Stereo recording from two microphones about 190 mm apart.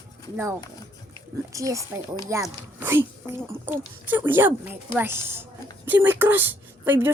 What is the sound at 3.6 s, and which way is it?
Speech, 10° right (ahead or behind).